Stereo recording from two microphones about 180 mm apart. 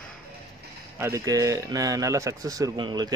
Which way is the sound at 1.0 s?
20° right (ahead or behind).